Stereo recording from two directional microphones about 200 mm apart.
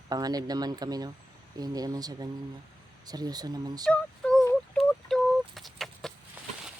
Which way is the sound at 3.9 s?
5° left (ahead or behind).